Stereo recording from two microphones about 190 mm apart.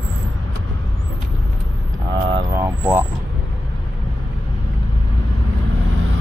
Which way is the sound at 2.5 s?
10° right (ahead or behind).